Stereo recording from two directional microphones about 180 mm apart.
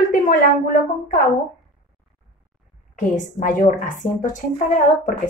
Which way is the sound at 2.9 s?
45° left (ahead or behind).